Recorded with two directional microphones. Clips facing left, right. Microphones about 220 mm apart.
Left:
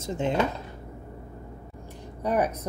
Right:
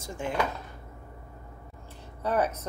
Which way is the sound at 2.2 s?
15° left (ahead or behind).